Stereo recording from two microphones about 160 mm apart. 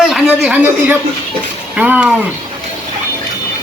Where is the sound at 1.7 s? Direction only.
10° right (ahead or behind).